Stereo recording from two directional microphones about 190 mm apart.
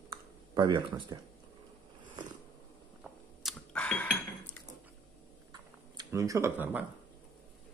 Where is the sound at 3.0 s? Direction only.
5° left (ahead or behind).